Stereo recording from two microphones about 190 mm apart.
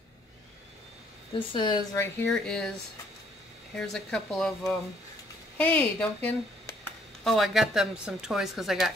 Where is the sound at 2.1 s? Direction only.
5° left (ahead or behind).